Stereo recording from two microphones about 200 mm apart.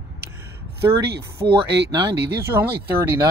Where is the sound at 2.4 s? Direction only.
10° right (ahead or behind).